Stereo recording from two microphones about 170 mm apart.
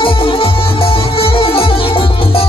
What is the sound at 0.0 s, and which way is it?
Music, 30° left (ahead or behind).